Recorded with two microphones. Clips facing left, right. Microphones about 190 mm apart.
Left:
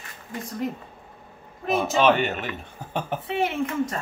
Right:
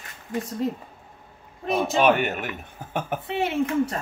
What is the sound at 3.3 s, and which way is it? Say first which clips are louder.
Speech: right 2 dB; 25° right (ahead or behind).